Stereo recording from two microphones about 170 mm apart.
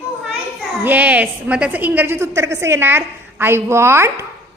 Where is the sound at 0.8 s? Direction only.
10° right (ahead or behind).